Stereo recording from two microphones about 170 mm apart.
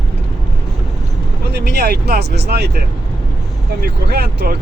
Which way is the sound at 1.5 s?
75° right (ahead or behind).